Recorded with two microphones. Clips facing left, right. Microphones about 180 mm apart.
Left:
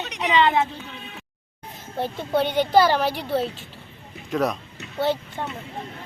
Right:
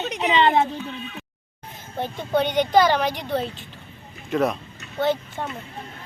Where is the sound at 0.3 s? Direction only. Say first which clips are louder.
Even; 30° right (ahead or behind).